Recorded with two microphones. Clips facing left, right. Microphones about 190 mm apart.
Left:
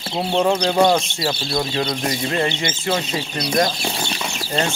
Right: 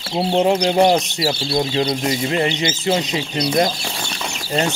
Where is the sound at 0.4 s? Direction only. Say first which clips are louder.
Right 1 dB; 20° right (ahead or behind).